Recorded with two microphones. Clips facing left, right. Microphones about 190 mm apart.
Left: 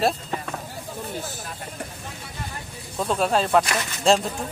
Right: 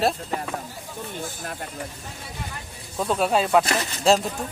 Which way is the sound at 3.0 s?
5° right (ahead or behind).